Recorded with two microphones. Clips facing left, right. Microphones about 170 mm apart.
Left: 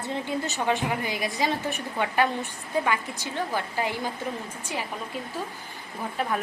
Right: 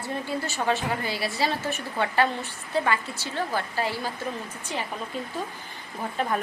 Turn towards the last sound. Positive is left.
turn(degrees=5)  # may be behind; listen again after turning